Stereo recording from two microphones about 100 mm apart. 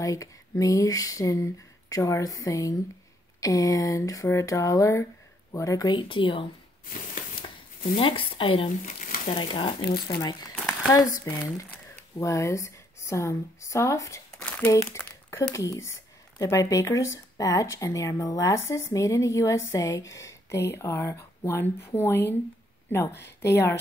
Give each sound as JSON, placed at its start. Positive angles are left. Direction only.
{"t": 0.0, "sound": "speech", "side_deg": 35}
{"t": 5.9, "sound": "speech", "side_deg": 55}
{"t": 7.9, "sound": "speech", "side_deg": 65}
{"t": 10.9, "sound": "a woman's voice", "side_deg": 30}